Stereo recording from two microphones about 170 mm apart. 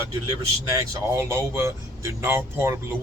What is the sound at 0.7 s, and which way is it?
Speech, 15° right (ahead or behind).